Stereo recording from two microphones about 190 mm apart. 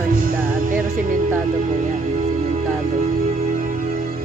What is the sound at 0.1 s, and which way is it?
Music, 50° right (ahead or behind).